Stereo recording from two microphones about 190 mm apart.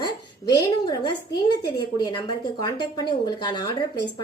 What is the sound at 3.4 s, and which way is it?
Speech, 20° left (ahead or behind).